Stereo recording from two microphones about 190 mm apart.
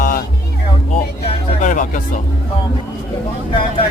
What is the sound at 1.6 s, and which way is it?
Speech, 45° left (ahead or behind).